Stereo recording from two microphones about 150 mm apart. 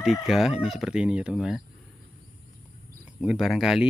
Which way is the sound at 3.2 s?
5° right (ahead or behind).